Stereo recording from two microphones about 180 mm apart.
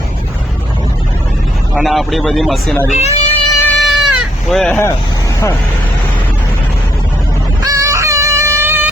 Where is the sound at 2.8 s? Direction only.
40° left (ahead or behind).